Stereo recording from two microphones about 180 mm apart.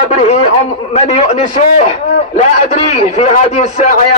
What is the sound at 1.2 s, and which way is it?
A man's voice, 40° left (ahead or behind).